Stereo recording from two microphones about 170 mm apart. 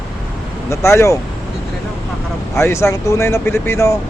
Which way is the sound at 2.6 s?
15° left (ahead or behind).